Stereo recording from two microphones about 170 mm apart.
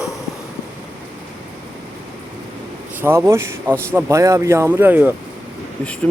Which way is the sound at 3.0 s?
15° right (ahead or behind).